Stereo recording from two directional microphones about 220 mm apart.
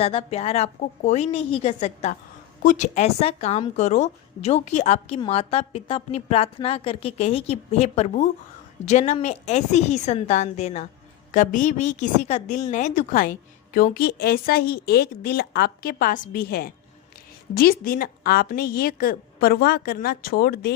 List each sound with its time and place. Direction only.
0.0 s a woman's voice: 25° left (ahead or behind); by 20.7 s 45° left (ahead or behind)